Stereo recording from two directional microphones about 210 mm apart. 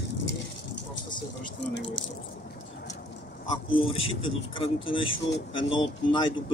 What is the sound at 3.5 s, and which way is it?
Speech, 25° left (ahead or behind).